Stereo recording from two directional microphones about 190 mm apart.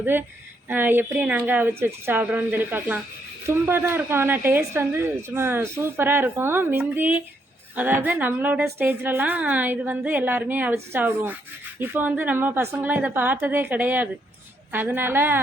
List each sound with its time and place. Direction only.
0.0 s a woman's voice: 10° right (ahead or behind)